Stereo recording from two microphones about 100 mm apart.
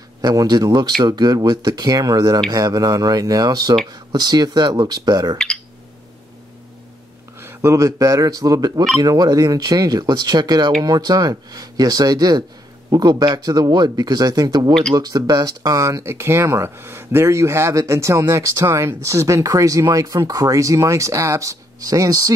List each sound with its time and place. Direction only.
0.2 s speech: 40° right (ahead or behind)
7.3 s speech: 25° right (ahead or behind)
14.7 s speech: 5° left (ahead or behind)
15.0 s speech: 40° right (ahead or behind)